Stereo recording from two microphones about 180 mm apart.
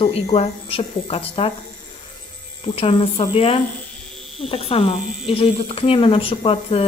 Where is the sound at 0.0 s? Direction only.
35° left (ahead or behind).